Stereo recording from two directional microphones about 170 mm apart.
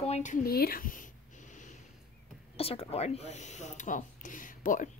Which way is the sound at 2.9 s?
40° left (ahead or behind).